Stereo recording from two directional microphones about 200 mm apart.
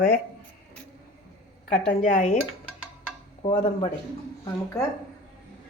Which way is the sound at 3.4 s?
25° left (ahead or behind).